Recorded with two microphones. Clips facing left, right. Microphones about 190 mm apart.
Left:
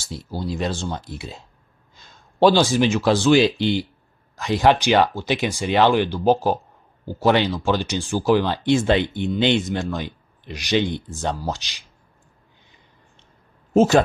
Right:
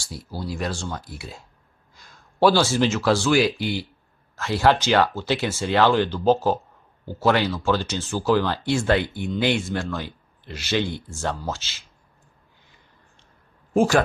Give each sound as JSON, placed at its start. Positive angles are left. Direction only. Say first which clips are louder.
{"t": 0.0, "sound": "speech", "louder": "left 4 dB", "side_deg": 25}
{"t": 13.7, "sound": "speech", "louder": "left 3 dB", "side_deg": 20}